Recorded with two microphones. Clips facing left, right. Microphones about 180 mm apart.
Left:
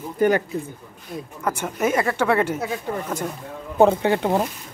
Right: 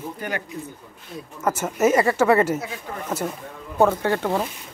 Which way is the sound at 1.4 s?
5° right (ahead or behind).